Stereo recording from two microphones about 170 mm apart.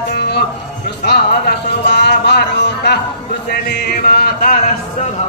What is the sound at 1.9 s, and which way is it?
Music, 80° left.